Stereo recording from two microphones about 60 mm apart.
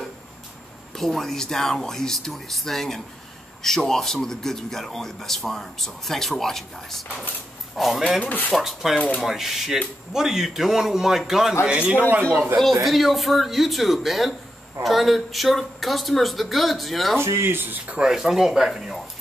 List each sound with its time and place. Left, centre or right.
0.9 s speech: centre
8.2 s speech: left
8.5 s speech: centre
11.6 s a man's voice: centre
12.5 s speech: centre
17.2 s speech: right
17.9 s speech: centre